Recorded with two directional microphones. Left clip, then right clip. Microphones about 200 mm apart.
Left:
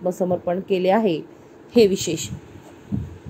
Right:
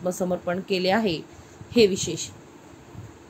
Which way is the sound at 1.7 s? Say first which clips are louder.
Left 3 dB; 20° left (ahead or behind).